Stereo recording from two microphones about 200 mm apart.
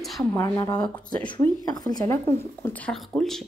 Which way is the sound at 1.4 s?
20° left (ahead or behind).